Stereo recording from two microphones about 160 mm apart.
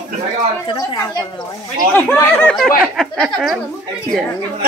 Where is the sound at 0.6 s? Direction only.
25° left (ahead or behind).